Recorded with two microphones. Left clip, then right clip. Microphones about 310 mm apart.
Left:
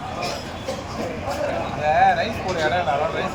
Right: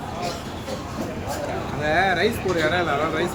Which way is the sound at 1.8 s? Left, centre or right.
Right.